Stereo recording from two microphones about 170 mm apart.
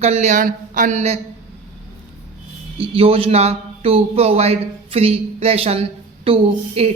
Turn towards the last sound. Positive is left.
turn(degrees=-35)  # may be behind; listen again after turning